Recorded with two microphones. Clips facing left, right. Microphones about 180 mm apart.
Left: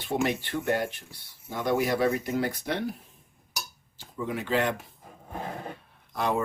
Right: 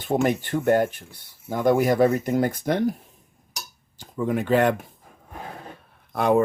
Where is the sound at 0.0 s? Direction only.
45° right (ahead or behind).